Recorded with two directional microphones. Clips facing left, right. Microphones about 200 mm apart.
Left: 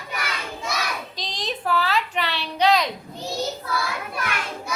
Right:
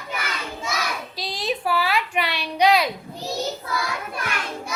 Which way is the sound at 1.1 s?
10° right (ahead or behind).